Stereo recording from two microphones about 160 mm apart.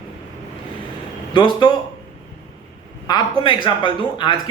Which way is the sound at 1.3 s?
30° left (ahead or behind).